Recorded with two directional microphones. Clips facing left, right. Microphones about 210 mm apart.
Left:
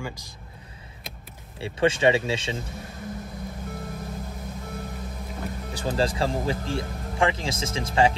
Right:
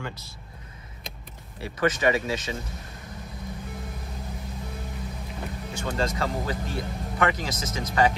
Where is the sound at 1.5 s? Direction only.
30° left (ahead or behind).